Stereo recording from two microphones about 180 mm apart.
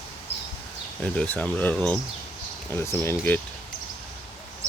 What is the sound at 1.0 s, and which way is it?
Speech, 10° left (ahead or behind).